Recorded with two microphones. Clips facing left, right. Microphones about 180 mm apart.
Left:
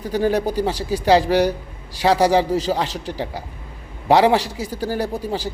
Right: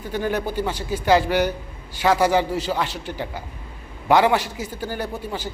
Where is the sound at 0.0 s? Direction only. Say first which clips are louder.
Left 5 dB; 35° left (ahead or behind).